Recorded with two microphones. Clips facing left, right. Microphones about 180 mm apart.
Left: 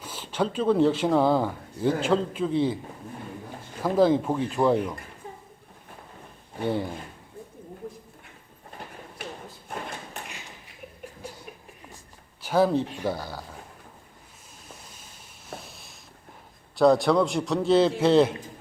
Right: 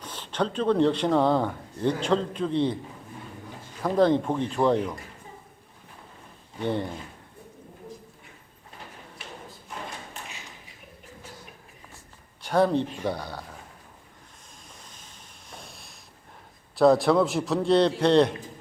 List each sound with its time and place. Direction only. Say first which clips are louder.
0.0 s speech: left 1 dB; 5° left (ahead or behind)
3.8 s speech: left 1 dB; 5° left (ahead or behind)
6.6 s speech: left 1 dB; 5° left (ahead or behind)
9.7 s thump: left 3 dB; 55° left (ahead or behind)
12.4 s speech: even; 5° left (ahead or behind)
14.7 s a sound: left 4 dB; 10° left (ahead or behind)
16.7 s speech: even; centre (ahead or behind)